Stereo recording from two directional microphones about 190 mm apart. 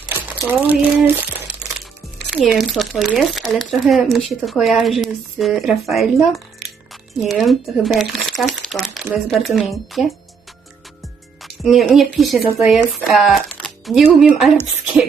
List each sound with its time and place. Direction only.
0.4 s speech: 10° right (ahead or behind)
2.3 s speech: centre (ahead or behind)
11.4 s a woman's voice: centre (ahead or behind)